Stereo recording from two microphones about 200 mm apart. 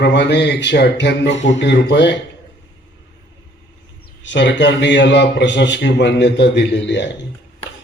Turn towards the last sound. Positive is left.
turn(degrees=60)  # may be behind; listen again after turning